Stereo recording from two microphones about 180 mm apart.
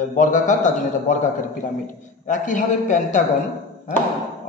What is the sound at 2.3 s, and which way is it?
Speech, 45° left (ahead or behind).